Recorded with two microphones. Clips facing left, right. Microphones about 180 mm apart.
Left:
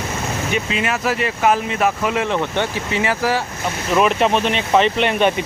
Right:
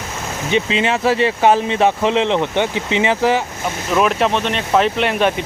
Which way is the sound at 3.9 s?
Centre (ahead or behind).